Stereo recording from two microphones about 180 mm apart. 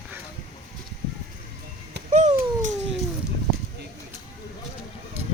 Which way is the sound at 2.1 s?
40° right (ahead or behind).